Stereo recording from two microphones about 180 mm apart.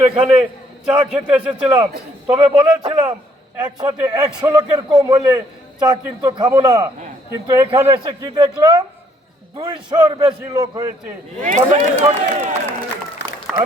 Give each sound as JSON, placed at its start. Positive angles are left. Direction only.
{"t": 0.0, "sound": "a man's voice", "side_deg": -30}
{"t": 0.9, "sound": "a man's voice", "side_deg": -5}
{"t": 2.2, "sound": "a man's voice", "side_deg": -25}
{"t": 11.3, "sound": "a man's voice", "side_deg": -40}
{"t": 13.5, "sound": "speech", "side_deg": 0}